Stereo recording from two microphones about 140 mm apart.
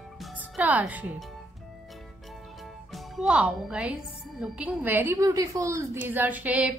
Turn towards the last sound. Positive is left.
turn(degrees=-10)  # may be behind; listen again after turning